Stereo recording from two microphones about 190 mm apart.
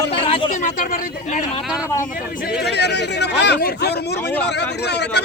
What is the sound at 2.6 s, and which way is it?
Speech, 60° left (ahead or behind).